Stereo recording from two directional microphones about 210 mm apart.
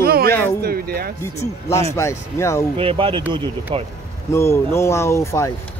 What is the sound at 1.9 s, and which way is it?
Speech, 15° left (ahead or behind).